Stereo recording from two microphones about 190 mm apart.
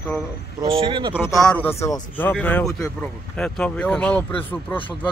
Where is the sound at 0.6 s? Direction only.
30° right (ahead or behind).